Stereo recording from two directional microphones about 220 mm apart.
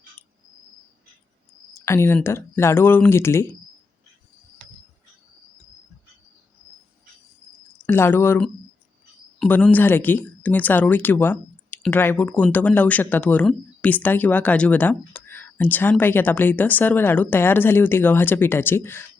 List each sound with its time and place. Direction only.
1.8 s speech: 10° left (ahead or behind)
7.9 s speech: 10° left (ahead or behind)